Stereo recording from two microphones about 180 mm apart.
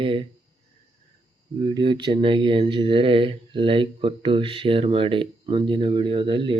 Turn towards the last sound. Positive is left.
turn(degrees=-25)  # may be behind; listen again after turning